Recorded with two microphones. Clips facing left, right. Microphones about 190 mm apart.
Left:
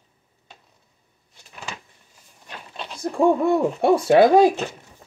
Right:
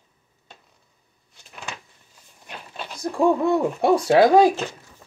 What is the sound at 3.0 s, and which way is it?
Hoot, 25° left (ahead or behind).